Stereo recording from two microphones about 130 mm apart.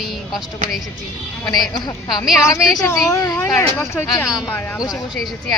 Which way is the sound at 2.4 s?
25° left (ahead or behind).